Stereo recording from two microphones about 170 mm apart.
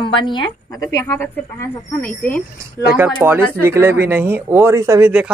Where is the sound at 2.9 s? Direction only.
10° right (ahead or behind).